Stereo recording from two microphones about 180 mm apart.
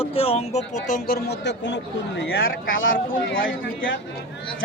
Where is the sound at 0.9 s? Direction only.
50° left (ahead or behind); by 2.7 s 75° left (ahead or behind).